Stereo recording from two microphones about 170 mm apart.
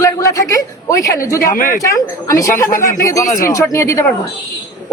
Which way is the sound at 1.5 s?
55° left (ahead or behind).